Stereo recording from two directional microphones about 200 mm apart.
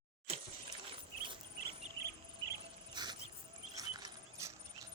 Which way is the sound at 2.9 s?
20° right (ahead or behind).